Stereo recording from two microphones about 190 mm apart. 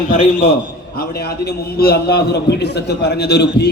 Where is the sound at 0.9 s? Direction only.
55° left (ahead or behind).